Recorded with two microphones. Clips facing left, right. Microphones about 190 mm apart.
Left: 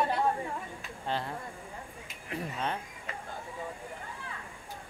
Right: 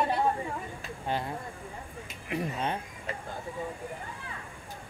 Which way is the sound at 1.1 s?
15° right (ahead or behind).